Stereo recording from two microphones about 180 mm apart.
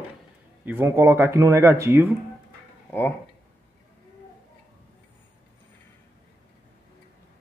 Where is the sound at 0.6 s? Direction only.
10° right (ahead or behind).